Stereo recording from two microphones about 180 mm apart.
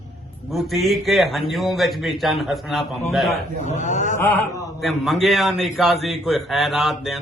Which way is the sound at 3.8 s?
45° left (ahead or behind).